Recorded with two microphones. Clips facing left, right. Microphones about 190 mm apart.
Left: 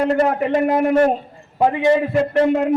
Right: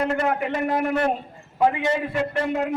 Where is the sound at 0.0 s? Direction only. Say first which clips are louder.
Left 6 dB; 35° left (ahead or behind).